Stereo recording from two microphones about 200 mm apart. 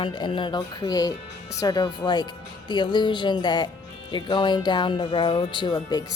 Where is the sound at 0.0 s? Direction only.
25° left (ahead or behind).